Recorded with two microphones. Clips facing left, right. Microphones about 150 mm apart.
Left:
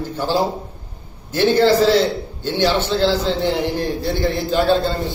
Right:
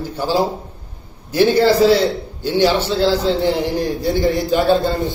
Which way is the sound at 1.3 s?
10° right (ahead or behind).